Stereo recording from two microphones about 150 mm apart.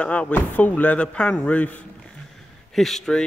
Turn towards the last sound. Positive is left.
turn(degrees=5)  # may be behind; listen again after turning